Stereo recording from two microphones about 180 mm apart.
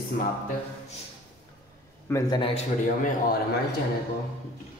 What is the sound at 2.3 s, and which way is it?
Speech, 30° left (ahead or behind).